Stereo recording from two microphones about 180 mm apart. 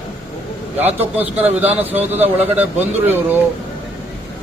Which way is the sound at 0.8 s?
10° right (ahead or behind).